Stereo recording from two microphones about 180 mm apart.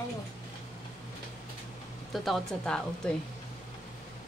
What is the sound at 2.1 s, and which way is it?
A woman's voice, centre (ahead or behind).